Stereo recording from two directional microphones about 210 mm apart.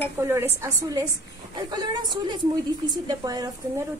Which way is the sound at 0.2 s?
10° right (ahead or behind).